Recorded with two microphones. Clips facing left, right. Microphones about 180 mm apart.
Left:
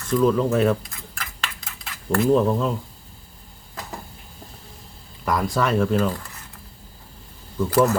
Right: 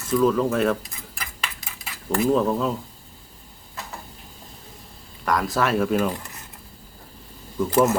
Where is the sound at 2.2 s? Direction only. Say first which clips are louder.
Left 2 dB; centre (ahead or behind).